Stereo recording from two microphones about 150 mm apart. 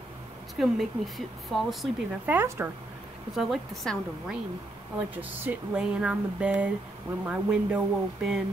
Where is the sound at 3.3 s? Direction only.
Centre (ahead or behind).